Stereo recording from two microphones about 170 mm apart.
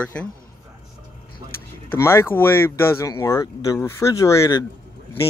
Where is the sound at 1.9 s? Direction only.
15° left (ahead or behind).